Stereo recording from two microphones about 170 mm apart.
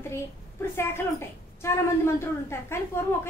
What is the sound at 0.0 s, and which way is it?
A child's voice, 15° left (ahead or behind).